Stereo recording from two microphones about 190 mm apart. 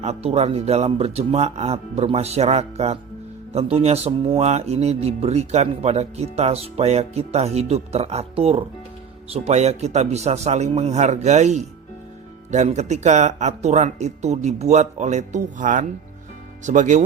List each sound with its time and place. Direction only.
0.0 s speech: 35° right (ahead or behind)